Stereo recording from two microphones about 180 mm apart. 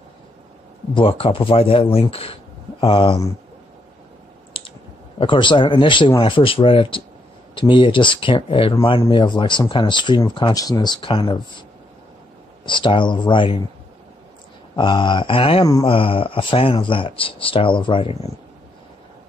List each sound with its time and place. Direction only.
0.9 s speech: 30° left (ahead or behind)
5.2 s speech: 25° left (ahead or behind)
12.6 s speech: 25° left (ahead or behind)
14.8 s speech: 25° left (ahead or behind)